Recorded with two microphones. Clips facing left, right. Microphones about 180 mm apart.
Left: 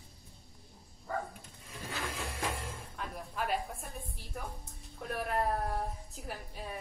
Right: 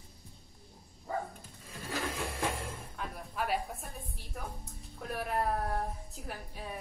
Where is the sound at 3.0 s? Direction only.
Centre (ahead or behind).